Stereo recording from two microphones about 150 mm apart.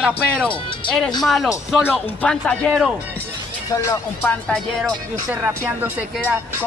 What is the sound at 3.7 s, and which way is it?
Speech, 20° left (ahead or behind).